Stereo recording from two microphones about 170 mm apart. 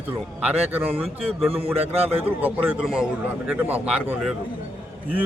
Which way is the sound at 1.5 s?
35° right (ahead or behind).